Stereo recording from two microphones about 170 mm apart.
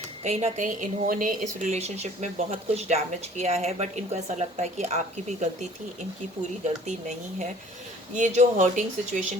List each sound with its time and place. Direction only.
0.3 s speech: 40° right (ahead or behind)
8.1 s speech: 45° right (ahead or behind)